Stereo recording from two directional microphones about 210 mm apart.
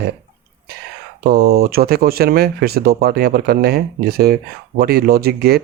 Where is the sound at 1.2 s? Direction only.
45° right (ahead or behind).